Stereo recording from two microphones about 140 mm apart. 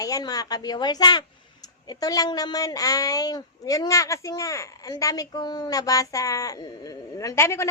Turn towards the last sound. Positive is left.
turn(degrees=20)  # may be behind; listen again after turning